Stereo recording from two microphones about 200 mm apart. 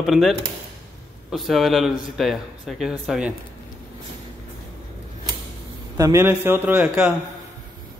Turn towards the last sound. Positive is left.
turn(degrees=-5)  # may be behind; listen again after turning